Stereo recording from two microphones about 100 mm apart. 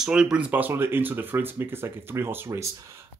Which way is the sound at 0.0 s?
10° right (ahead or behind).